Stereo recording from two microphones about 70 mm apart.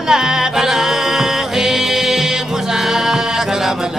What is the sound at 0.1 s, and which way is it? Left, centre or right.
Music, centre.